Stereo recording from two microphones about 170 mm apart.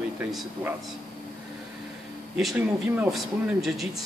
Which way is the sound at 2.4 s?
5° right (ahead or behind).